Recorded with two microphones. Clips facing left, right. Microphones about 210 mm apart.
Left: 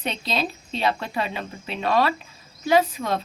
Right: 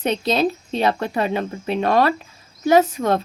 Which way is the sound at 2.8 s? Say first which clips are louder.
Right 7 dB; 65° right (ahead or behind).